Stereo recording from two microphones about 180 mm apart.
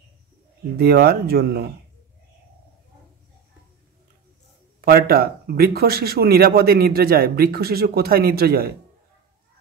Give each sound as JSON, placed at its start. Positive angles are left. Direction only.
{"t": 0.7, "sound": "a man's voice", "side_deg": -60}
{"t": 4.8, "sound": "a man's voice", "side_deg": -60}